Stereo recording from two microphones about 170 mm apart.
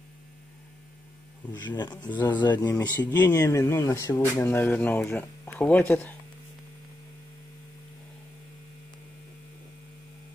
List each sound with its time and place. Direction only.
1.5 s speech: 25° left (ahead or behind)
2.6 s speech: 10° left (ahead or behind)